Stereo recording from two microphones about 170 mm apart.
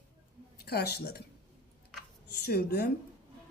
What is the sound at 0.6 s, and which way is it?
Speech, 70° left (ahead or behind).